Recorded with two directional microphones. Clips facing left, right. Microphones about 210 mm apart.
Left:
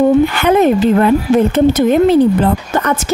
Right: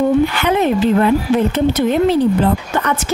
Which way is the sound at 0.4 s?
50° left (ahead or behind).